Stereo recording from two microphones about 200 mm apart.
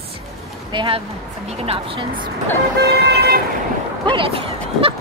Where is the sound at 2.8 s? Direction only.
55° right (ahead or behind).